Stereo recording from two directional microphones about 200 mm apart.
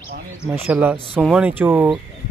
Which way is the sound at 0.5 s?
10° right (ahead or behind).